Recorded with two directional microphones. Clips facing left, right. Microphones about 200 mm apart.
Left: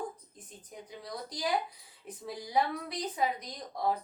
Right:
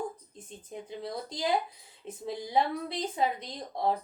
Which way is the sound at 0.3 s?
25° right (ahead or behind).